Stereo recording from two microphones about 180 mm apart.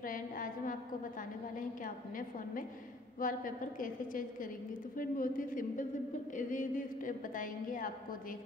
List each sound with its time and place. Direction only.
0.0 s a woman's voice: 50° left (ahead or behind)